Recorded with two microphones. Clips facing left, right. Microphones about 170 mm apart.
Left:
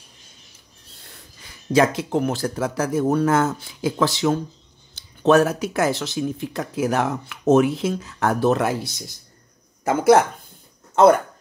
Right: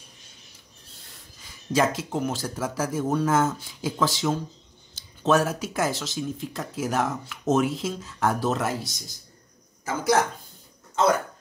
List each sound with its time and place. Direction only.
1.4 s speech: 65° left (ahead or behind)